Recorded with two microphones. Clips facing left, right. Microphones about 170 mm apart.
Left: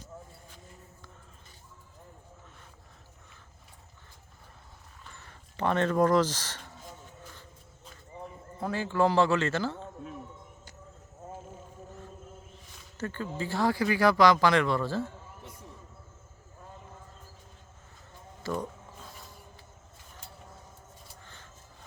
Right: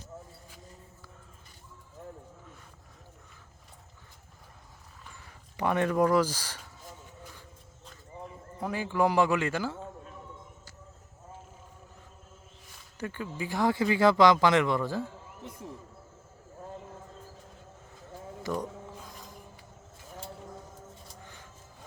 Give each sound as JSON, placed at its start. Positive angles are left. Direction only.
{"t": 5.1, "sound": "speech", "side_deg": -10}
{"t": 8.5, "sound": "speech", "side_deg": -10}
{"t": 13.0, "sound": "speech", "side_deg": -15}